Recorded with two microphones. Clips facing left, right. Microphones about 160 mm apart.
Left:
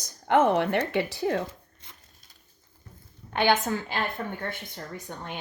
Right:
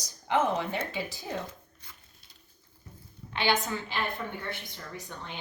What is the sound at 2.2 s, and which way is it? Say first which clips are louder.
Bird: left 1 dB; 45° left (ahead or behind).